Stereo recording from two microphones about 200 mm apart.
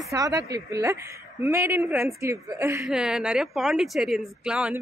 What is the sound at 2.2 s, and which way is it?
Speech, 15° right (ahead or behind).